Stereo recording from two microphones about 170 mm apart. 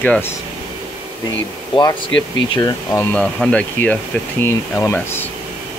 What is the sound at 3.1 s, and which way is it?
Speech, 5° left (ahead or behind).